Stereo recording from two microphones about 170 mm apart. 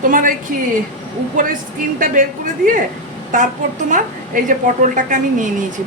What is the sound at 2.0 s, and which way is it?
A woman's voice, 50° right (ahead or behind).